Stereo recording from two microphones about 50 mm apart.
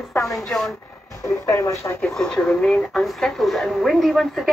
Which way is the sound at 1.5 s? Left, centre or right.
Left.